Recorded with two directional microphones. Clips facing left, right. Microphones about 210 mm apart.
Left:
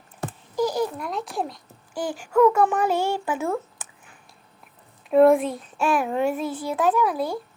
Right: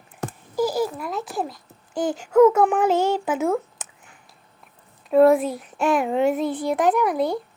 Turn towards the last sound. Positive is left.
turn(degrees=-15)  # may be behind; listen again after turning